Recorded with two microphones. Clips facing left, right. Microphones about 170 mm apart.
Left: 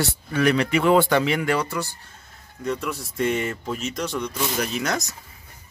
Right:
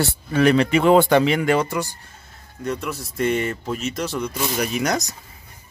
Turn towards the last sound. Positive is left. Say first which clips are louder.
# right 3 dB
turn(degrees=-15)  # may be behind; listen again after turning